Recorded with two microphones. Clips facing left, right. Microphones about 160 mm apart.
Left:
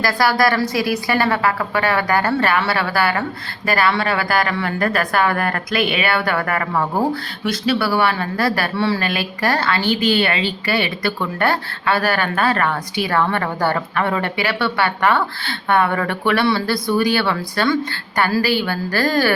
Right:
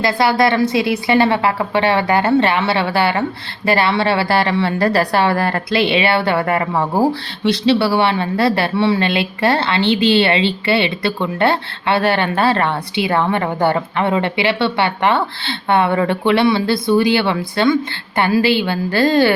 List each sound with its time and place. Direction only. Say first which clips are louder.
0.0 s a woman's voice: right 2 dB; 25° right (ahead or behind)